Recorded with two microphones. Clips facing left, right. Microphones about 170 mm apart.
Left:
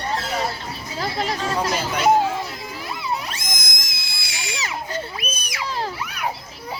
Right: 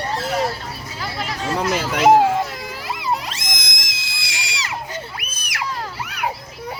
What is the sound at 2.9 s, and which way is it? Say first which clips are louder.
Screaming: right 4 dB; 90° right.